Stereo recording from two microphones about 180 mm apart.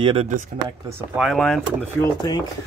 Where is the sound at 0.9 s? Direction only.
5° right (ahead or behind).